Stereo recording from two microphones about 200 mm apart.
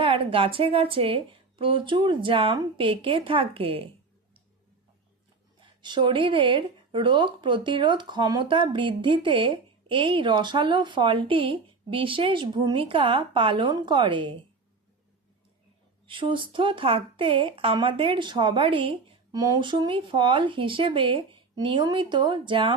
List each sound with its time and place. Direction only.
0.0 s speech: 25° right (ahead or behind)
5.5 s speech: 25° right (ahead or behind)
16.0 s speech: 25° right (ahead or behind)